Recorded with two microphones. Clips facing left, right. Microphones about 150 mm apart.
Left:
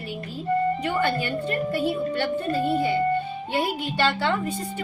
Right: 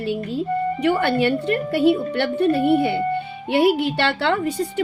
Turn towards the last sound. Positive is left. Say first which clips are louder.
# right 5 dB
turn(degrees=-70)  # may be behind; listen again after turning